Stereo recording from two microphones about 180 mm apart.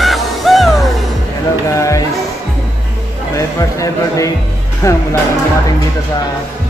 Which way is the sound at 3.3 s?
15° left (ahead or behind).